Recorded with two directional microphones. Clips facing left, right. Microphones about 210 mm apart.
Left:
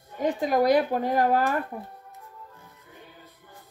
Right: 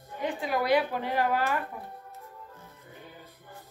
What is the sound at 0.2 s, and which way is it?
Speech, 40° left (ahead or behind).